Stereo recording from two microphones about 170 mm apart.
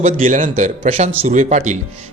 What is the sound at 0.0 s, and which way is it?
Speech, 50° right (ahead or behind).